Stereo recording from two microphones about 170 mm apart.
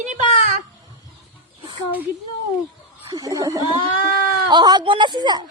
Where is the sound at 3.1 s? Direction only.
20° right (ahead or behind).